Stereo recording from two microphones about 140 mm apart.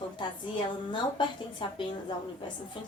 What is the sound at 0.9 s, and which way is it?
A woman's voice, 35° left (ahead or behind).